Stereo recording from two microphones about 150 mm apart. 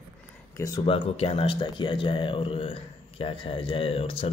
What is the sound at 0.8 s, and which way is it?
Speech, 40° left (ahead or behind).